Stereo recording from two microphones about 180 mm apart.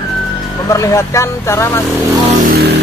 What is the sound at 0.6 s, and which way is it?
Speech, 20° left (ahead or behind).